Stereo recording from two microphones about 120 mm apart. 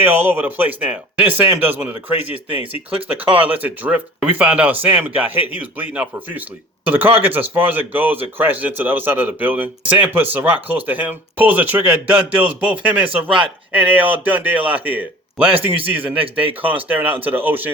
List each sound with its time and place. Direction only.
0.0 s speech: 15° right (ahead or behind)
15.7 s a man's voice: 50° right (ahead or behind)
16.6 s speech: 15° right (ahead or behind)